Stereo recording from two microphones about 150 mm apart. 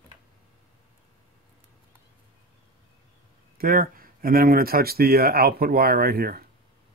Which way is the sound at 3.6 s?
75° right (ahead or behind).